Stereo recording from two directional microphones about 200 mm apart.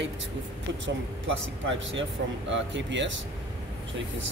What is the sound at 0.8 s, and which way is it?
Speech, 70° right (ahead or behind).